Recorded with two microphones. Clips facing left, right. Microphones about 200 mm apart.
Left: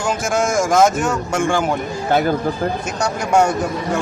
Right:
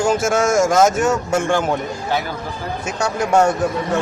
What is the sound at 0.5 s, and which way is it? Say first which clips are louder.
A man's voice: left 1 dB; 5° right (ahead or behind).